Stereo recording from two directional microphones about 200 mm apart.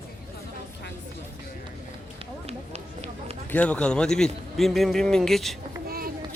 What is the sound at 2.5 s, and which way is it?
Run, 30° right (ahead or behind).